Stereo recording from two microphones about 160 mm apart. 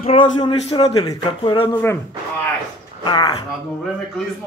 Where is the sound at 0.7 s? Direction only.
25° left (ahead or behind).